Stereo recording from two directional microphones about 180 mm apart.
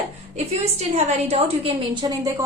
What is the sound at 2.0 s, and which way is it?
Speech, 25° right (ahead or behind).